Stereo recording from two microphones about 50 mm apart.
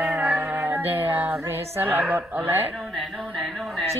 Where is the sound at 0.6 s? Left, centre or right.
Right.